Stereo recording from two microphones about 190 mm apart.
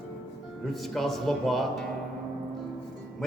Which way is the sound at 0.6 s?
Centre (ahead or behind).